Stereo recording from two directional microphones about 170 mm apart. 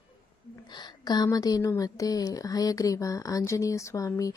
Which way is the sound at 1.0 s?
25° left (ahead or behind).